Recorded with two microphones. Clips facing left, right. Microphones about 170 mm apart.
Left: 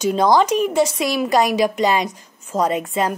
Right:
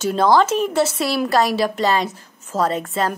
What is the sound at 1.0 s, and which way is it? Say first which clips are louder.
A woman's voice: left 1 dB; 15° left (ahead or behind).